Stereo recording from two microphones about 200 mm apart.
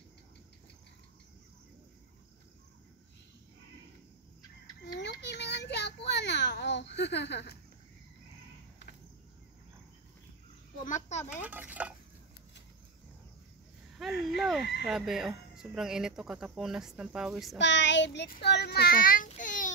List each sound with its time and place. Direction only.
5.2 s a sound: 60° left (ahead or behind)
10.9 s a child's voice: 35° left (ahead or behind)
11.4 s speech: 5° right (ahead or behind)
14.2 s speech: centre (ahead or behind)
17.6 s speech: 60° left (ahead or behind); by 19.7 s 40° left (ahead or behind)